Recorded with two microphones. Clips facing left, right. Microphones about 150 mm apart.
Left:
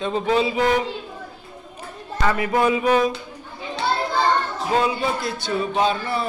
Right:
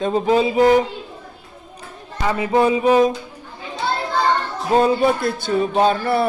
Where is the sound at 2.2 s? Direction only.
20° right (ahead or behind).